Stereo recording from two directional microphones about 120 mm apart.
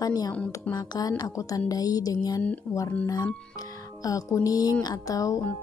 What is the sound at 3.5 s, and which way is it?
Speech, 30° left (ahead or behind).